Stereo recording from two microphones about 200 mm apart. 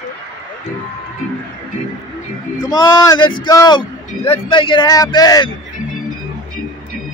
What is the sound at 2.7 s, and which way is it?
A man's voice, 20° left (ahead or behind).